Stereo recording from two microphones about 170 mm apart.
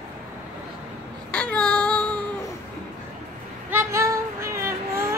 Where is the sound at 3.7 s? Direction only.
15° right (ahead or behind).